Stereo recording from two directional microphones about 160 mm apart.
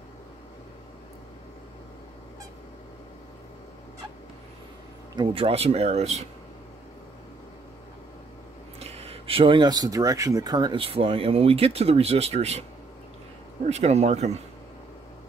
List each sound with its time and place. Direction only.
5.1 s speech: 30° right (ahead or behind)
8.7 s speech: 40° right (ahead or behind)
13.7 s speech: 45° right (ahead or behind)